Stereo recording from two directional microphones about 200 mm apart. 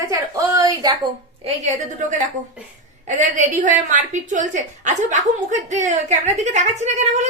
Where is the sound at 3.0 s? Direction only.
40° right (ahead or behind).